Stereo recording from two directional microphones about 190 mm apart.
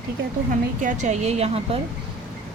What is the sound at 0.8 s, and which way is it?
Speech, 40° right (ahead or behind).